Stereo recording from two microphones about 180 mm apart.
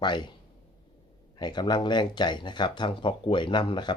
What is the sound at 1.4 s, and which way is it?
Speech, 25° left (ahead or behind).